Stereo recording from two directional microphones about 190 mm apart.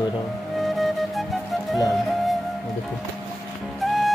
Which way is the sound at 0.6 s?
Centre (ahead or behind).